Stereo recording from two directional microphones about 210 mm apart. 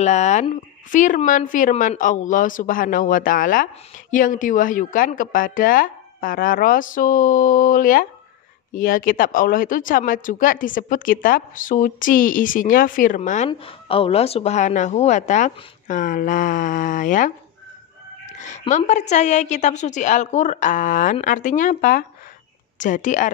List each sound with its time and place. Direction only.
0.0 s speech: 35° left (ahead or behind)